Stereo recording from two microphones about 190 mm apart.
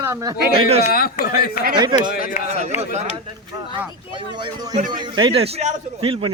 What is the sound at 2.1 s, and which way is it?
Speech, 45° left (ahead or behind).